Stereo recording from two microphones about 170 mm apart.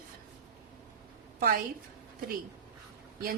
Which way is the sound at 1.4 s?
55° right (ahead or behind).